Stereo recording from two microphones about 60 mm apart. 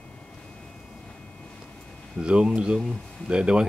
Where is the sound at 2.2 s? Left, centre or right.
Centre.